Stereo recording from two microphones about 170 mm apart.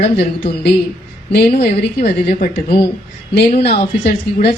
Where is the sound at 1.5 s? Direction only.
45° left (ahead or behind).